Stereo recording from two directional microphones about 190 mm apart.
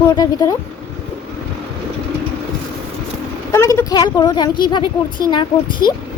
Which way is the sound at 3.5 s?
15° left (ahead or behind).